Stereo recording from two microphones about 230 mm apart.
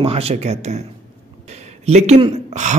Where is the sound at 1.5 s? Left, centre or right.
Right.